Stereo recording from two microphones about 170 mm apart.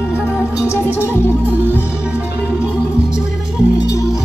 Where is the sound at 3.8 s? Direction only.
20° left (ahead or behind).